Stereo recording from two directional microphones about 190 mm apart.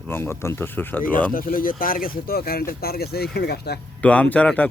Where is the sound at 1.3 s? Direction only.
45° left (ahead or behind).